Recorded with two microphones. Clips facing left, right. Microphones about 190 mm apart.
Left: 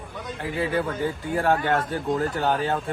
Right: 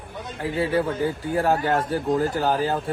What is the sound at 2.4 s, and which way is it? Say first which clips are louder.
Speech: right 1 dB; centre (ahead or behind).